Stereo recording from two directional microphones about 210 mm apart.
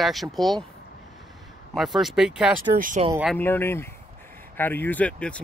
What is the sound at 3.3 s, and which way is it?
Speech, 10° left (ahead or behind).